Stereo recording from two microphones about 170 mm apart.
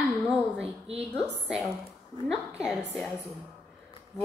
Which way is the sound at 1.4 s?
5° right (ahead or behind).